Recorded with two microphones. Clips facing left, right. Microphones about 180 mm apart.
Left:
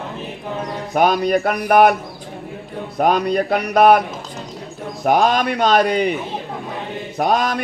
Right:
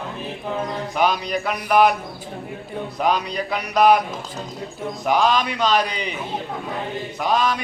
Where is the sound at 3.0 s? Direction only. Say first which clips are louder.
Left 6 dB; 50° left (ahead or behind).